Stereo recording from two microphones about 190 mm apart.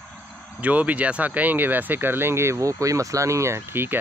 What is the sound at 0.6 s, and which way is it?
Speech, 10° right (ahead or behind).